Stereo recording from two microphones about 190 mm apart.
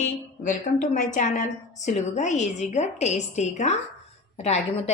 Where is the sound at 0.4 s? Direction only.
40° left (ahead or behind).